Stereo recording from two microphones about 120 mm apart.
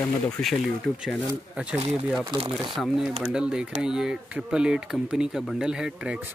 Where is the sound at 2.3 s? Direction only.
45° right (ahead or behind).